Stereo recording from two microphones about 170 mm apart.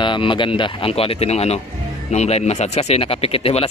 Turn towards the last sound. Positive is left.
turn(degrees=35)  # may be behind; listen again after turning